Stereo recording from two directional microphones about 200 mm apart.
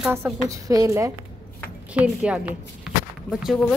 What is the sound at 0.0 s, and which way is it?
A woman's voice, 10° right (ahead or behind).